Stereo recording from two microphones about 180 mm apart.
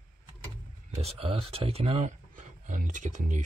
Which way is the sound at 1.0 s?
35° right (ahead or behind).